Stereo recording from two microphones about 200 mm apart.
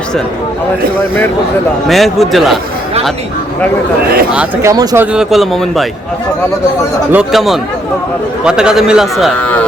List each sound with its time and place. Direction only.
1.9 s a man's voice: centre (ahead or behind)
4.3 s a man's voice: 5° right (ahead or behind)
4.7 s speech: 20° right (ahead or behind)
5.1 s a man's voice: centre (ahead or behind)
7.1 s a man's voice: 5° right (ahead or behind)